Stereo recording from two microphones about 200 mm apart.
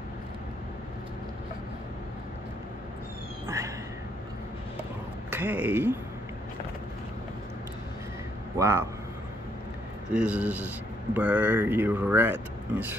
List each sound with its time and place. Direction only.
3.4 s cat: 15° right (ahead or behind)
5.3 s speech: 10° right (ahead or behind)
8.5 s speech: 15° right (ahead or behind)
10.1 s speech: 5° right (ahead or behind)